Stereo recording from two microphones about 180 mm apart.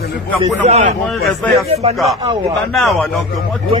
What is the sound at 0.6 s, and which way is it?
Speech, 35° right (ahead or behind).